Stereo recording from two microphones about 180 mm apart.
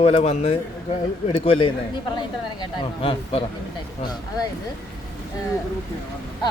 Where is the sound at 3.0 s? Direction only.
30° left (ahead or behind).